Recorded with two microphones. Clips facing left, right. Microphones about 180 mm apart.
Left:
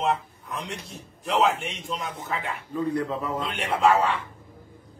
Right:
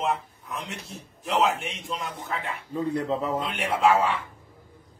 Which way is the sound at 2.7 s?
25° right (ahead or behind).